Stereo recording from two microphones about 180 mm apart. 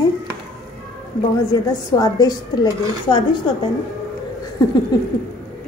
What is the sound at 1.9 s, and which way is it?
Speech, 20° left (ahead or behind).